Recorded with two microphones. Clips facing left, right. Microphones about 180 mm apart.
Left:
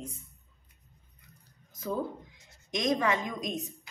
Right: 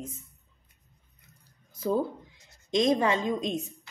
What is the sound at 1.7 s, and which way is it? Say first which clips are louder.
A woman's voice: right 6 dB; 30° right (ahead or behind).